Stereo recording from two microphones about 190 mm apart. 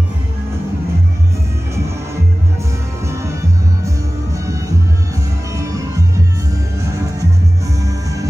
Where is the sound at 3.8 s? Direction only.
15° right (ahead or behind).